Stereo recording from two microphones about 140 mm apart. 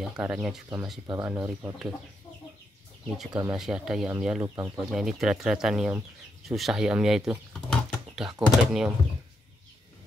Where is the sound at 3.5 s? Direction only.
5° right (ahead or behind).